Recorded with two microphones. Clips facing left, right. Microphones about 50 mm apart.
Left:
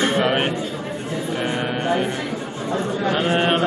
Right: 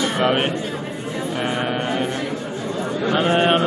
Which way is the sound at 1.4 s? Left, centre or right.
Centre.